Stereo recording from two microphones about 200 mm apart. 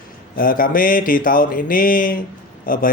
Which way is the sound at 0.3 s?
45° left (ahead or behind).